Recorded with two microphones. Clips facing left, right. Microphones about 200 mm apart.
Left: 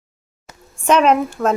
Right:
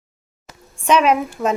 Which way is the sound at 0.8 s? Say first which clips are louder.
Left 2 dB; centre (ahead or behind).